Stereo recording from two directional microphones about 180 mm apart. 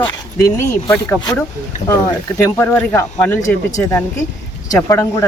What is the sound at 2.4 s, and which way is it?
A woman's voice, 10° left (ahead or behind).